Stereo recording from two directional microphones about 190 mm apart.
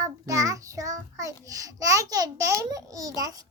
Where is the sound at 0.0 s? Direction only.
15° right (ahead or behind).